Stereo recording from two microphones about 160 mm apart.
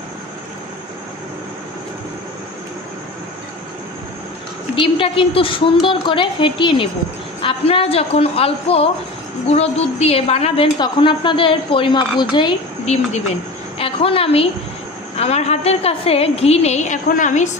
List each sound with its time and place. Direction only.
4.7 s a woman's voice: 35° left (ahead or behind)
12.8 s a woman's voice: 40° left (ahead or behind)